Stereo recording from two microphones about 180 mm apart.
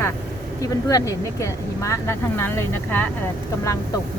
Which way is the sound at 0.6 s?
20° left (ahead or behind).